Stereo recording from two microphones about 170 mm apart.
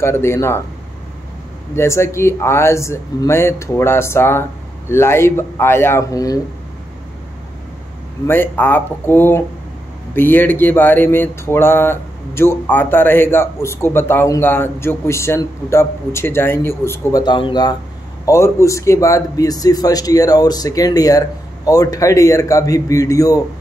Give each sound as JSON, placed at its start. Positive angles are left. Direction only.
{"t": 0.0, "sound": "speech", "side_deg": 15}
{"t": 1.8, "sound": "speech", "side_deg": 15}
{"t": 8.3, "sound": "speech", "side_deg": 10}
{"t": 17.2, "sound": "a man's voice", "side_deg": 25}